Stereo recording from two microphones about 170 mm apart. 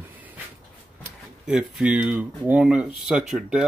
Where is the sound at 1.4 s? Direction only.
5° right (ahead or behind).